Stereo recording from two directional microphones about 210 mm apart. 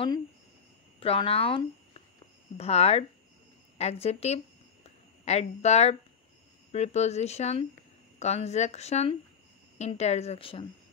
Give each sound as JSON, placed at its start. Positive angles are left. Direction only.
{"t": 0.9, "sound": "speech", "side_deg": 25}